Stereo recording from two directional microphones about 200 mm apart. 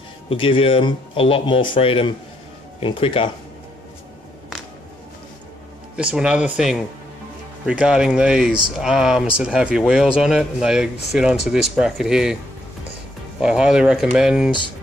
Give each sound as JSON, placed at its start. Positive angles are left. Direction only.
{"t": 0.3, "sound": "speech", "side_deg": 25}
{"t": 5.9, "sound": "speech", "side_deg": -5}
{"t": 13.4, "sound": "speech", "side_deg": -5}